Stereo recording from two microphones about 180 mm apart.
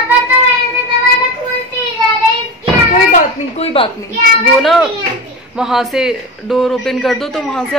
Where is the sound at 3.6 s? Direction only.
30° left (ahead or behind).